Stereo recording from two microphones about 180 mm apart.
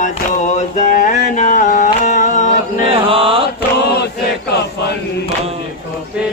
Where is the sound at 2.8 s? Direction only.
30° right (ahead or behind).